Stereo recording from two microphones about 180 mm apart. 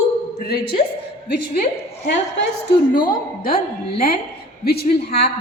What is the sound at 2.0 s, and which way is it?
Speech, 70° left (ahead or behind).